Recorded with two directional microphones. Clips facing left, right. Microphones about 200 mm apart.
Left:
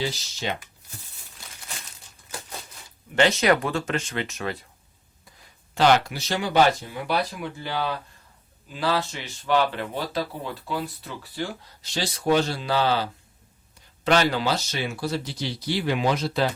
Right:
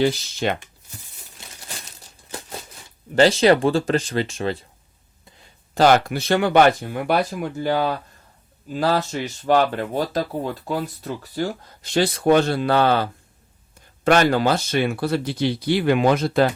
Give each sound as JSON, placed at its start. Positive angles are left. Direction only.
{"t": 0.0, "sound": "speech", "side_deg": -55}
{"t": 3.2, "sound": "speech", "side_deg": -30}
{"t": 5.7, "sound": "speech", "side_deg": -45}